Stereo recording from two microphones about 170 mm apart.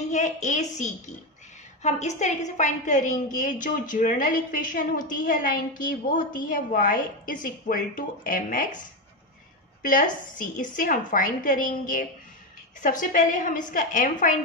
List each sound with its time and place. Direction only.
0.1 s a woman's voice: 45° left (ahead or behind)
9.8 s a woman's voice: 55° left (ahead or behind)